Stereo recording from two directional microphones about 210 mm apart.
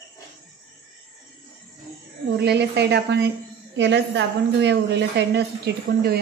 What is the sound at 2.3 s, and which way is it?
A woman's voice, 55° right (ahead or behind).